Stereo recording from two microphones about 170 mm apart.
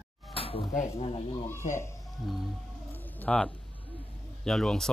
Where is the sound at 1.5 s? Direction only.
15° left (ahead or behind).